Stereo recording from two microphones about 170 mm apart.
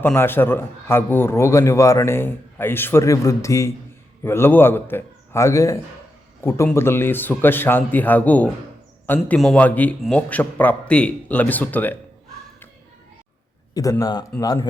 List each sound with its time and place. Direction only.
0.0 s a man's voice: 15° left (ahead or behind)
14.0 s speech: 25° left (ahead or behind)